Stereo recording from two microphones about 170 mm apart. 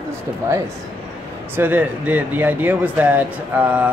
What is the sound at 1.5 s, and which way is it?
Speech, 10° right (ahead or behind).